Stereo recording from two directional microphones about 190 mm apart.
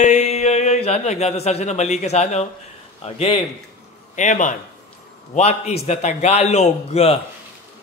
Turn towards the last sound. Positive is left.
turn(degrees=35)  # may be behind; listen again after turning